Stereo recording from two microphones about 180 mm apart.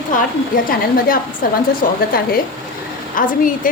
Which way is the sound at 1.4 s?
50° left (ahead or behind).